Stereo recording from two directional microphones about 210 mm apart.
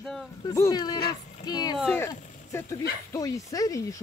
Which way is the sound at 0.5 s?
15° left (ahead or behind).